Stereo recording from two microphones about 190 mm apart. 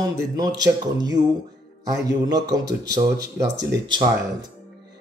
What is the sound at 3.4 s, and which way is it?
Speech, 65° right (ahead or behind).